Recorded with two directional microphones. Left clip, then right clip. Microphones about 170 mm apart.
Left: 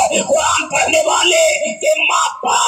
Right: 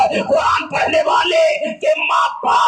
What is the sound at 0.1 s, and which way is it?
Speech, 35° left (ahead or behind).